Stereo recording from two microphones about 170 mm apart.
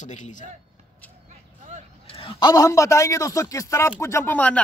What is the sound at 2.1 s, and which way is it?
Speech, 25° left (ahead or behind).